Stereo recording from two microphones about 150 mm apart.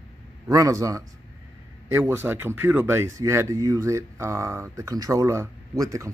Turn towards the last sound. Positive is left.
turn(degrees=-20)  # may be behind; listen again after turning